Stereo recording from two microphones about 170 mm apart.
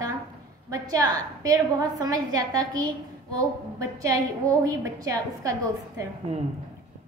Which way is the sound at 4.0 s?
20° right (ahead or behind).